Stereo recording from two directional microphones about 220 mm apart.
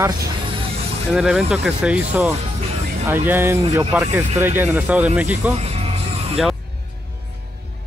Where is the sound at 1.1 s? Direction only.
Centre (ahead or behind).